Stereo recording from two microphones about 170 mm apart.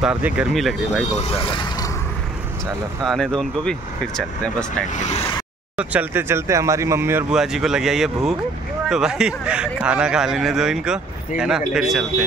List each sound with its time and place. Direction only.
0.0 s speech: 5° right (ahead or behind)
1.4 s mechanisms: 30° left (ahead or behind)
3.1 s speech: 5° left (ahead or behind)
4.9 s speech: 40° left (ahead or behind)
5.8 s speech: 10° right (ahead or behind)